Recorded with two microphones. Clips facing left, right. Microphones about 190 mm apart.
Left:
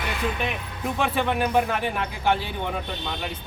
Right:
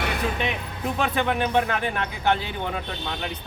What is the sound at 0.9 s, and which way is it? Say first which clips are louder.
Speech: even; centre (ahead or behind).